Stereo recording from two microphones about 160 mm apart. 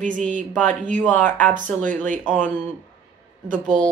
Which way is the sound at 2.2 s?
10° left (ahead or behind).